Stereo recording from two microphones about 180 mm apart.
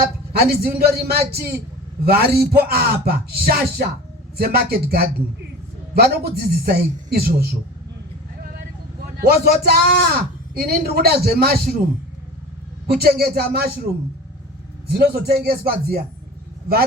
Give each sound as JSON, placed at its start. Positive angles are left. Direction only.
{"t": 0.0, "sound": "a man's voice", "side_deg": -60}
{"t": 9.1, "sound": "a man's voice", "side_deg": -60}
{"t": 12.9, "sound": "a man's voice", "side_deg": -60}
{"t": 14.8, "sound": "a man's voice", "side_deg": -60}